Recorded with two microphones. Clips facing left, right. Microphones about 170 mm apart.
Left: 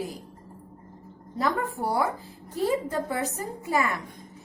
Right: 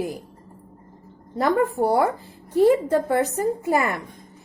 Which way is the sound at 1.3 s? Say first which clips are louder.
Right 7 dB; 60° right (ahead or behind).